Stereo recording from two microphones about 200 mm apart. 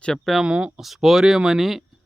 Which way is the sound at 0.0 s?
Centre (ahead or behind).